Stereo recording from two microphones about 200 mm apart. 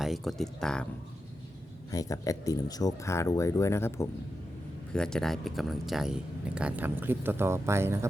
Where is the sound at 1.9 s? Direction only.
15° left (ahead or behind).